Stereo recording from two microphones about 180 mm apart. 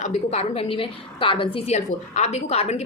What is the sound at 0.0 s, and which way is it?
Speech, 35° left (ahead or behind).